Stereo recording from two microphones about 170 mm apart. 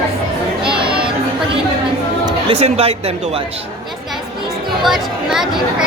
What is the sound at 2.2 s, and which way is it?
Speech, 35° right (ahead or behind).